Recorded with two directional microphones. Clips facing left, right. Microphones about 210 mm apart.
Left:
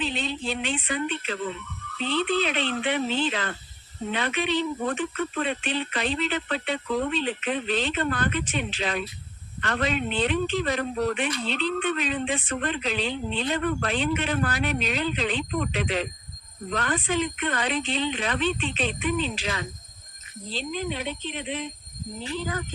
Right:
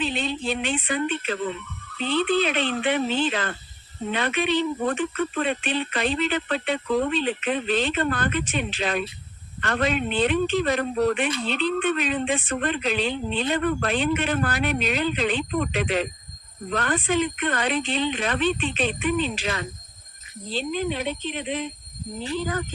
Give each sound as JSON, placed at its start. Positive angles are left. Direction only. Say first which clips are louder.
{"t": 0.0, "sound": "speech", "louder": "right 3 dB", "side_deg": -55}
{"t": 2.4, "sound": "speech", "louder": "right 3 dB", "side_deg": -50}